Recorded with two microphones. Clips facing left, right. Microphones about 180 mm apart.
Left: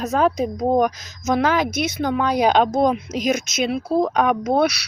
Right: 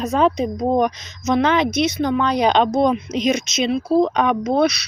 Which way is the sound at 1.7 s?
55° left (ahead or behind).